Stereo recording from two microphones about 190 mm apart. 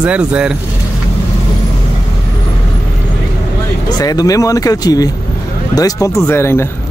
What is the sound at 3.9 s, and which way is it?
Speech, 20° left (ahead or behind).